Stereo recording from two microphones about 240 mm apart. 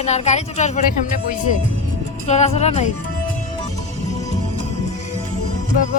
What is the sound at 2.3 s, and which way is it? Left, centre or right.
Speech, left.